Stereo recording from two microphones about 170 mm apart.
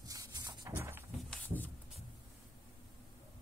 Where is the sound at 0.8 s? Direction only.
15° right (ahead or behind).